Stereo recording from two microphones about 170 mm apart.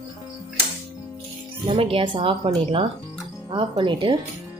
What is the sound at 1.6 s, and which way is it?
Speech, 35° right (ahead or behind).